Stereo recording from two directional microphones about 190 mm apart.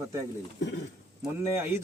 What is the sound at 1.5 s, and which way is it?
Speech, 10° right (ahead or behind).